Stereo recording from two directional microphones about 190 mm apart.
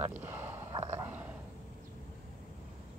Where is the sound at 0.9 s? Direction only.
10° right (ahead or behind).